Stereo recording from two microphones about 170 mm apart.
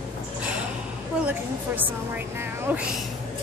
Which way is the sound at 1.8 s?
10° right (ahead or behind).